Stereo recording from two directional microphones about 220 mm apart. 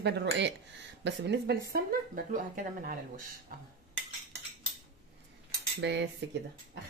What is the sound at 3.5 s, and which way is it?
Cutlery, 40° right (ahead or behind).